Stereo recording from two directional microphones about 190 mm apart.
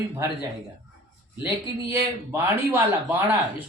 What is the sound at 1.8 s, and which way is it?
Speech, 15° right (ahead or behind).